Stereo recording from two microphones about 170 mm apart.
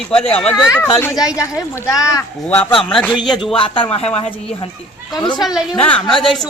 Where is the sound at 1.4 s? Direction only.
15° left (ahead or behind).